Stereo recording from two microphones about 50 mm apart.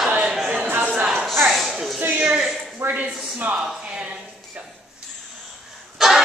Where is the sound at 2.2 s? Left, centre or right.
Centre.